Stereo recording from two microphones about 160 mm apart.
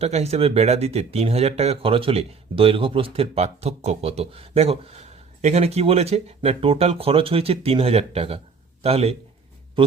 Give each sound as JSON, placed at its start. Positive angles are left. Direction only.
{"t": 0.0, "sound": "speech", "side_deg": -40}